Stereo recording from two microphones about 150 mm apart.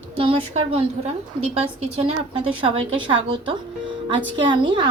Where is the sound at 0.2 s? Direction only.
35° right (ahead or behind).